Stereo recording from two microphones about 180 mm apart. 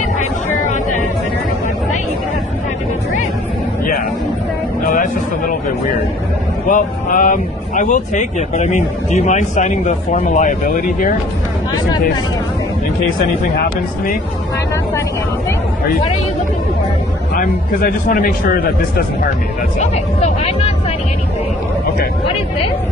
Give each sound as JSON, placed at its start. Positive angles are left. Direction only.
{"t": 4.8, "sound": "music", "side_deg": 45}
{"t": 6.7, "sound": "speech", "side_deg": 45}
{"t": 17.4, "sound": "speech", "side_deg": 55}
{"t": 19.8, "sound": "speech", "side_deg": 35}